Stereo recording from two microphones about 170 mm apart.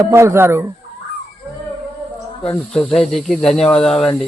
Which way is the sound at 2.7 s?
Centre (ahead or behind).